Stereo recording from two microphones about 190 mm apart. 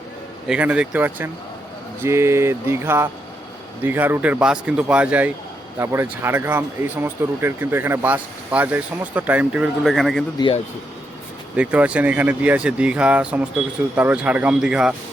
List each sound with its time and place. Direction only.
0.4 s speech: 5° right (ahead or behind)
10.3 s speech: 25° left (ahead or behind)
11.5 s speech: 5° right (ahead or behind)